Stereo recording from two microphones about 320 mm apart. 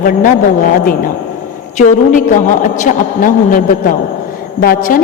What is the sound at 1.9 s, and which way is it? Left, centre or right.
A woman's voice, left.